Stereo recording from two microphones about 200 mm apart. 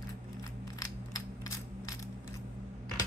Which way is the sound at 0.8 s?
15° left (ahead or behind).